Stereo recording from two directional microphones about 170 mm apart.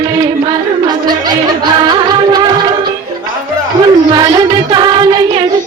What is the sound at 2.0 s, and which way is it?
Music of bollywood, 25° right (ahead or behind).